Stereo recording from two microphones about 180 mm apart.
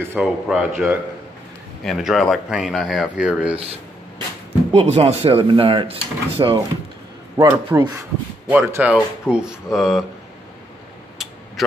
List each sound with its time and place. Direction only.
0.0 s speech: 10° right (ahead or behind)
4.7 s speech: 35° right (ahead or behind)
7.3 s speech: 15° right (ahead or behind); by 10.0 s centre (ahead or behind)